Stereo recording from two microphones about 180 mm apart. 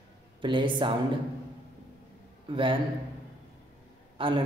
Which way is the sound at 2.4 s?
30° right (ahead or behind).